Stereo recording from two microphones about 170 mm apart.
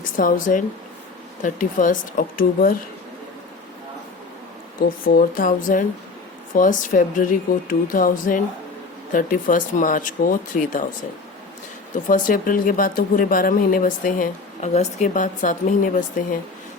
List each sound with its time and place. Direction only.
0.0 s speech: 50° left (ahead or behind)
4.8 s speech: 60° left (ahead or behind)
11.9 s speech: 50° left (ahead or behind)